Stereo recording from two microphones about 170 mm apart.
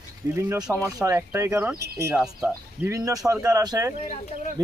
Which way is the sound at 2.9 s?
20° right (ahead or behind).